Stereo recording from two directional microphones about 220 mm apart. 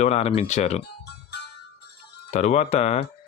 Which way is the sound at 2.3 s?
30° left (ahead or behind).